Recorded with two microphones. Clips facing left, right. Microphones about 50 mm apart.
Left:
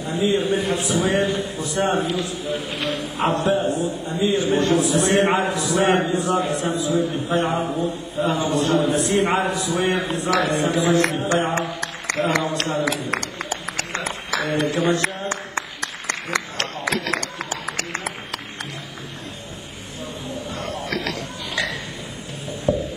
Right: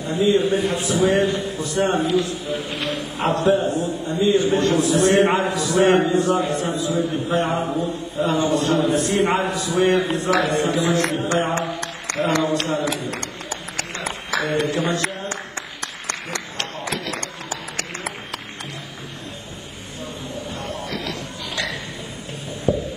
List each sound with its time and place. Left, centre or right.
0.2 s a man's voice: centre
14.4 s a man's voice: centre
16.8 s run: left
20.9 s a sound: left